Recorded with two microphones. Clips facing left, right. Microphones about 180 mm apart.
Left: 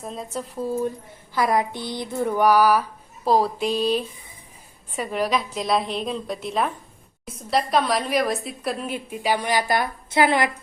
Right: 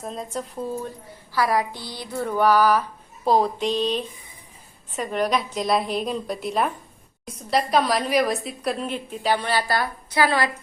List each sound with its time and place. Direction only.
0.0 s a woman's voice: centre (ahead or behind)
1.3 s a sound: 20° left (ahead or behind)
4.9 s a woman's voice: 5° left (ahead or behind)